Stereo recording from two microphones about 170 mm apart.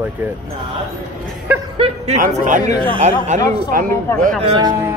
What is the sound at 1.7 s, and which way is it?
A man's voice, 40° right (ahead or behind).